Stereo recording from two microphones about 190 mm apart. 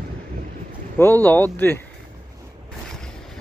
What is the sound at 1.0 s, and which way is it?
Speech, 10° left (ahead or behind).